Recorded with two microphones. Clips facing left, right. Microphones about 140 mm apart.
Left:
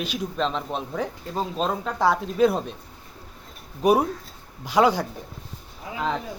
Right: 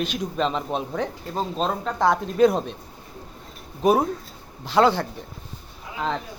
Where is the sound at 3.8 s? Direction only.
10° left (ahead or behind).